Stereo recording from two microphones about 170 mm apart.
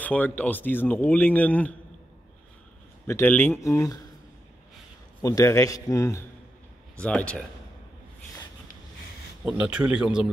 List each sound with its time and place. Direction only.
0.0 s speech: 10° left (ahead or behind)
3.1 s speech: 10° left (ahead or behind)
5.2 s a man's voice: 20° left (ahead or behind)
7.0 s speech: 5° left (ahead or behind)
9.4 s speech: 5° right (ahead or behind)